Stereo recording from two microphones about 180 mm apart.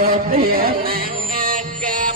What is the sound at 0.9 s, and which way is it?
Music, 50° right (ahead or behind).